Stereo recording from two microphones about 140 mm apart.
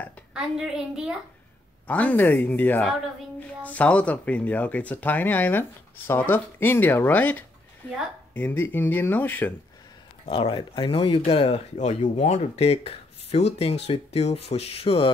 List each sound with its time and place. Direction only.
0.3 s a woman's voice: 5° right (ahead or behind)
1.9 s speech: 10° left (ahead or behind)
10.2 s speech: 45° left (ahead or behind)